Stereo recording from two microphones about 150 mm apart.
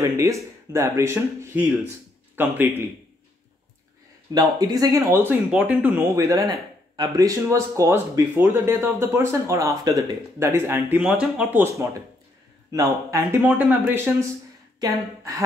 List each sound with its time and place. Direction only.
0.2 s speech: 20° right (ahead or behind)
4.3 s speech: 25° right (ahead or behind)